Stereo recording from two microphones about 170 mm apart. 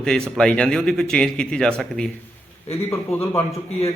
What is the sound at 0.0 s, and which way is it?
Speech, 5° left (ahead or behind).